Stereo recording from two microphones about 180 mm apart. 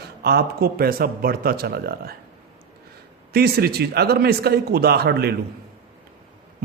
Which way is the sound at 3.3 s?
60° right (ahead or behind).